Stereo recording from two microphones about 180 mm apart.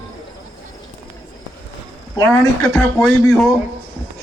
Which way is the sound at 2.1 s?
15° left (ahead or behind).